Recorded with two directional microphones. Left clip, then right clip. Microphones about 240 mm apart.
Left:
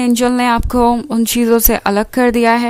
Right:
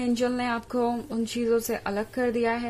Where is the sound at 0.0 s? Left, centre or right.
Left.